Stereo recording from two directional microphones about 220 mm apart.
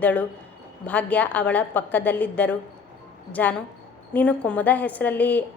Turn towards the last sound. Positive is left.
turn(degrees=10)  # may be behind; listen again after turning